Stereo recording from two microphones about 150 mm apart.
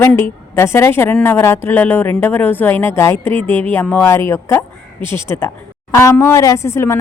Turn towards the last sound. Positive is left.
turn(degrees=15)  # may be behind; listen again after turning